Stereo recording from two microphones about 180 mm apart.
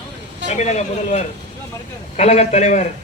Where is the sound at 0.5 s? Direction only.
40° left (ahead or behind).